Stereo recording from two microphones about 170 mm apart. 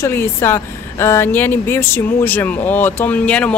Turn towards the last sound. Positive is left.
turn(degrees=5)  # may be behind; listen again after turning